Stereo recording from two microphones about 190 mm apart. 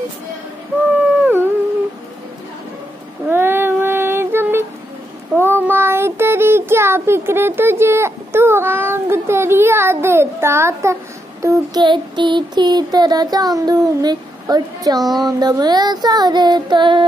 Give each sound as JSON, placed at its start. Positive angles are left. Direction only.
{"t": 1.2, "sound": "canidae", "side_deg": -10}
{"t": 3.3, "sound": "child singing", "side_deg": -10}